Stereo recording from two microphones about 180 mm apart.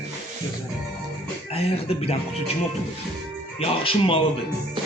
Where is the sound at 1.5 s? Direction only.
35° left (ahead or behind).